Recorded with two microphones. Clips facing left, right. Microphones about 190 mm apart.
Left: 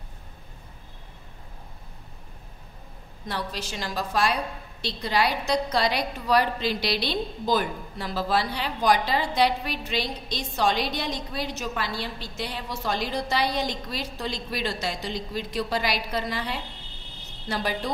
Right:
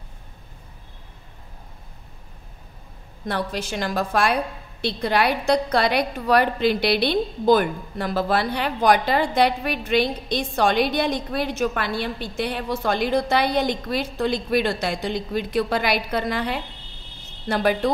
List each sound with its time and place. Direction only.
3.3 s a woman's voice: 55° right (ahead or behind)